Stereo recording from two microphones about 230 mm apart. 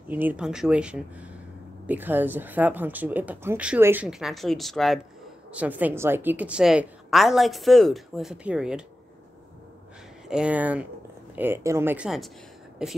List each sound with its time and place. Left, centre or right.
0.1 s a woman's voice: centre
10.2 s a woman's voice: centre